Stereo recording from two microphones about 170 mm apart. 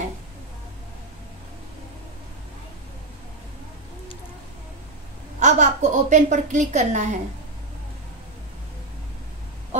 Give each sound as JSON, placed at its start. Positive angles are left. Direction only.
{"t": 5.4, "sound": "a woman's voice", "side_deg": -45}